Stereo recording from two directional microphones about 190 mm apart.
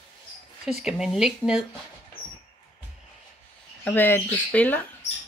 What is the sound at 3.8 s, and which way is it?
Speech, 10° left (ahead or behind).